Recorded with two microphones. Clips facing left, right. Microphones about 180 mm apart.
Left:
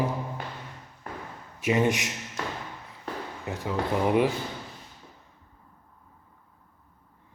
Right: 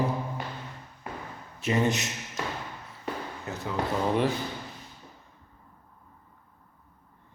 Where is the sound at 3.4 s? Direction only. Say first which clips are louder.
Left 2 dB; 15° left (ahead or behind).